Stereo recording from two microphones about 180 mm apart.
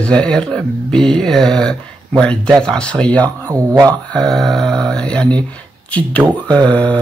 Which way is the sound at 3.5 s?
20° right (ahead or behind).